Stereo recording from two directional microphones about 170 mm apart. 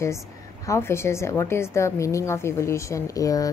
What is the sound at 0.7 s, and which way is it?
A woman's voice, 15° left (ahead or behind).